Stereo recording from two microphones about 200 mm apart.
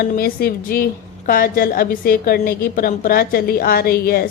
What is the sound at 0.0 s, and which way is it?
A woman's voice, 50° left (ahead or behind).